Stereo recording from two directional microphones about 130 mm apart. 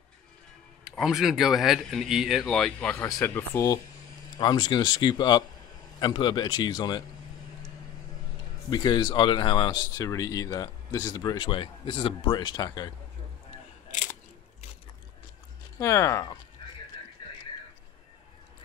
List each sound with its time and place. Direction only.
0.9 s speech: 5° right (ahead or behind)
3.2 s speech: 20° left (ahead or behind)
4.4 s speech: 35° left (ahead or behind)
8.6 s speech: 35° left (ahead or behind)
15.8 s speech: 25° left (ahead or behind)
17.2 s a sound: 40° left (ahead or behind)